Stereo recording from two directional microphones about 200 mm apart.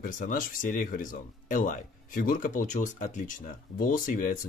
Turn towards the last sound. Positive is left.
turn(degrees=45)  # may be behind; listen again after turning